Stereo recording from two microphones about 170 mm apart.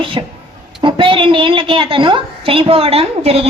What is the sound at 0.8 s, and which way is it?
A woman's voice, 30° right (ahead or behind).